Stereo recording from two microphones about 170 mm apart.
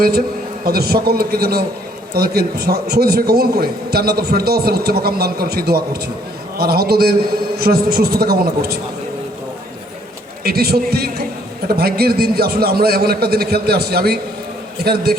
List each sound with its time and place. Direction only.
0.6 s a man's voice: 65° right (ahead or behind)
10.4 s a man's voice: 65° right (ahead or behind)